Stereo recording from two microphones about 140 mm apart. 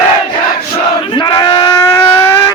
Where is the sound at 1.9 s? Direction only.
20° left (ahead or behind).